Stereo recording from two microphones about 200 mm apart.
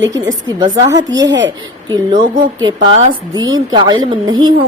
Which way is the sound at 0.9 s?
65° right (ahead or behind).